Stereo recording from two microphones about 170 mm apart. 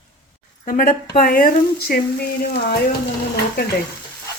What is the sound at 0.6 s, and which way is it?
A woman's voice, 50° left (ahead or behind).